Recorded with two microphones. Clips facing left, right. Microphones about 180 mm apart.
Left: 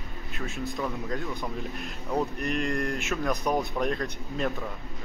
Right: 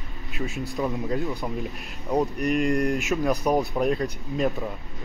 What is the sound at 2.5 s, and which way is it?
Speech, centre (ahead or behind).